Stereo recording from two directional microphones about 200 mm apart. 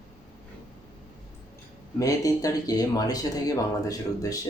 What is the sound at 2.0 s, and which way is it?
Speech, 15° left (ahead or behind).